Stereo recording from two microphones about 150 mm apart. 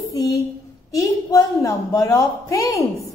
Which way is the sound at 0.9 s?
20° left (ahead or behind).